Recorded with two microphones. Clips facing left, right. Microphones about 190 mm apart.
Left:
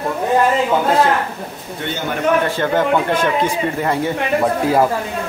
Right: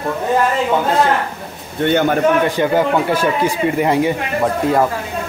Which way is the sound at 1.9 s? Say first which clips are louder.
Right 9 dB; 60° right (ahead or behind).